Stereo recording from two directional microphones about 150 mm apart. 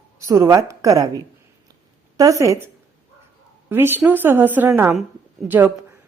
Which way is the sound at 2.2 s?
20° right (ahead or behind).